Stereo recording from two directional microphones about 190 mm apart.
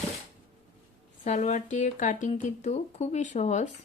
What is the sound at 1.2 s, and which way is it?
A woman's voice, 40° left (ahead or behind).